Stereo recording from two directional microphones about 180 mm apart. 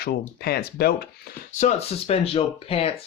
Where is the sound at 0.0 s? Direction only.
60° left (ahead or behind).